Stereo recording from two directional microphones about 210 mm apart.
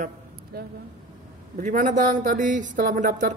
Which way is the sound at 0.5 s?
50° right (ahead or behind).